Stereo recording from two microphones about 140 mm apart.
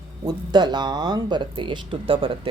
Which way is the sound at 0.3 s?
30° right (ahead or behind).